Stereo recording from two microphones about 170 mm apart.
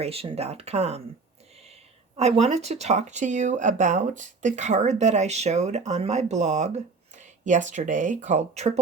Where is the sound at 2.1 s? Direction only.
40° right (ahead or behind).